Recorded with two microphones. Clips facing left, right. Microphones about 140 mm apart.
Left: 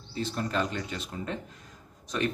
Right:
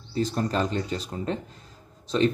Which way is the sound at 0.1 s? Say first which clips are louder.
Right 5 dB; 40° right (ahead or behind).